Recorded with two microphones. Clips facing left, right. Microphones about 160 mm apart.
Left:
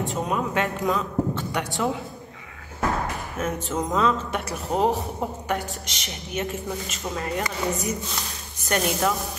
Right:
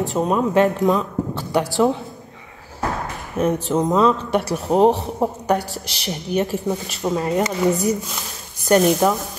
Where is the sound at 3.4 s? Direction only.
40° right (ahead or behind).